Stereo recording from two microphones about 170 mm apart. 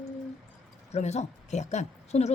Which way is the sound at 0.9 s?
40° left (ahead or behind).